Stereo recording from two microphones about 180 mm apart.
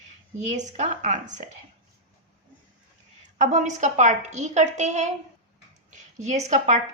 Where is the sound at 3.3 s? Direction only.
40° right (ahead or behind).